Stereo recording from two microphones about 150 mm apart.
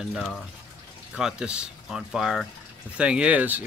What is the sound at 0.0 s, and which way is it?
Speech, centre (ahead or behind).